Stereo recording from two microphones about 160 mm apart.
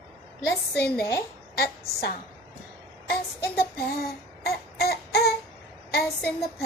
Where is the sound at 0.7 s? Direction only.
80° left.